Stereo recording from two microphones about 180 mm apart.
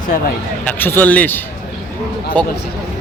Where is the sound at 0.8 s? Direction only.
10° left (ahead or behind).